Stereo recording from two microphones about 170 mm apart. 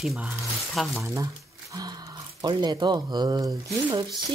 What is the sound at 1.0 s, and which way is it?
Speech, 20° right (ahead or behind).